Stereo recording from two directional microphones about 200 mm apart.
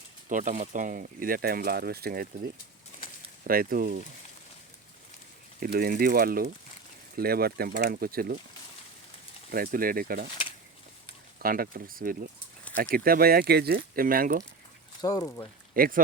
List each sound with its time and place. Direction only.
0.3 s speech: 40° right (ahead or behind)
5.5 s speech: 45° right (ahead or behind)
9.5 s speech: 45° right (ahead or behind)
11.4 s speech: 45° right (ahead or behind)
15.0 s speech: 15° left (ahead or behind)
15.7 s speech: 45° right (ahead or behind)